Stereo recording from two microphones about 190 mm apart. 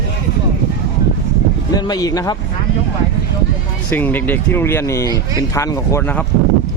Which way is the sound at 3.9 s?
10° left (ahead or behind).